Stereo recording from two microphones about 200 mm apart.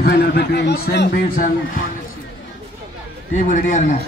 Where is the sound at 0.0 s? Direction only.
55° left (ahead or behind).